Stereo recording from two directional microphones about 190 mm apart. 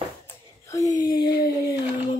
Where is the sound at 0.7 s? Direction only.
15° left (ahead or behind).